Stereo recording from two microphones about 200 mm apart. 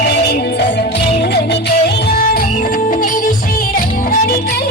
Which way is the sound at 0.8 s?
55° left (ahead or behind).